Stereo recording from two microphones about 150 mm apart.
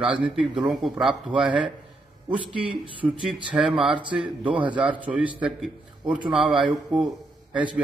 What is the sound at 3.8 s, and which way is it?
Speech, 35° right (ahead or behind).